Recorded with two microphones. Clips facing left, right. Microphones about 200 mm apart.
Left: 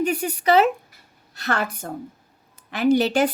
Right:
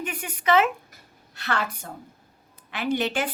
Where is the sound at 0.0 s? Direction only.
40° left (ahead or behind).